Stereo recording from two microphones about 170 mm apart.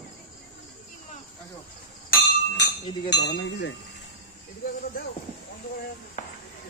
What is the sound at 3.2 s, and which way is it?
Speech, 85° left.